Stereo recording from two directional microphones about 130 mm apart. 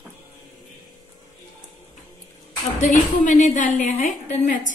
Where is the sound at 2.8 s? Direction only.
65° left (ahead or behind).